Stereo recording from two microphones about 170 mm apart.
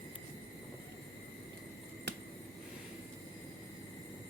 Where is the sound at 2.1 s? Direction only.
80° right.